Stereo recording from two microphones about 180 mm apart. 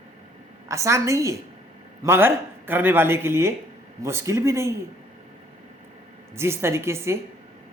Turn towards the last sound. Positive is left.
turn(degrees=-15)  # may be behind; listen again after turning